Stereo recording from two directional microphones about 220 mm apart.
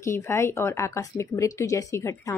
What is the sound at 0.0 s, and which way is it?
Speech, 10° left (ahead or behind).